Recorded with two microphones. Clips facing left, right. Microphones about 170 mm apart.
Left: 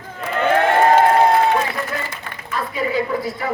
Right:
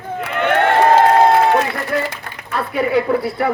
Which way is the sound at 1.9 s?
65° right (ahead or behind).